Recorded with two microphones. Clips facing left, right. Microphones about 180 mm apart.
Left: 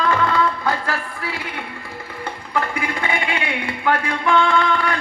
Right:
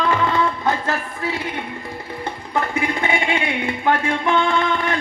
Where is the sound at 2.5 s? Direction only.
25° right (ahead or behind).